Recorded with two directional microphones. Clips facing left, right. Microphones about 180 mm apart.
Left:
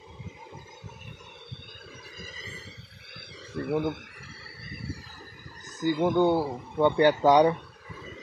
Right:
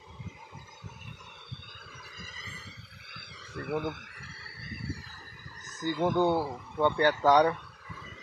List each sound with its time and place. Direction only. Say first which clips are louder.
3.5 s speech: left 5 dB; 25° left (ahead or behind)
5.8 s speech: left 4 dB; 15° left (ahead or behind)
6.1 s speech: left 3 dB; centre (ahead or behind)
6.4 s speech: left 4 dB; 25° left (ahead or behind)